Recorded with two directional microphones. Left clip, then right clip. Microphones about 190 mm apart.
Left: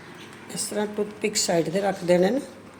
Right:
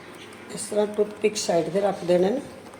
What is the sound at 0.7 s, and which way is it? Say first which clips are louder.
Speech: right 5 dB; 50° left (ahead or behind).